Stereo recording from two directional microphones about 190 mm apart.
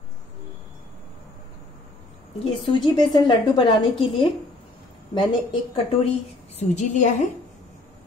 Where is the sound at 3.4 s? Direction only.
20° left (ahead or behind).